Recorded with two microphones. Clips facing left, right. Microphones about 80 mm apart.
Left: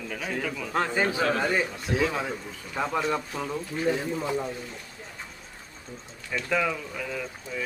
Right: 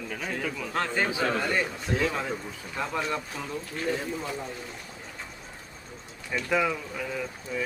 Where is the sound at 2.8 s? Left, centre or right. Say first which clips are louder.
Left 3 dB; centre.